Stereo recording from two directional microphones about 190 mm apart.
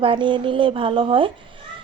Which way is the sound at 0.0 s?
25° right (ahead or behind).